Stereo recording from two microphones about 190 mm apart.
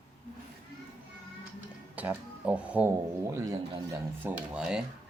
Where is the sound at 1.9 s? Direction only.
10° right (ahead or behind).